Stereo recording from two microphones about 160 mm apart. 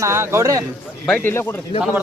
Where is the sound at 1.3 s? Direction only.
15° left (ahead or behind).